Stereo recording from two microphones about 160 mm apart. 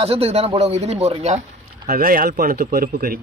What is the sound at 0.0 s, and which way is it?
A woman's voice, 40° right (ahead or behind).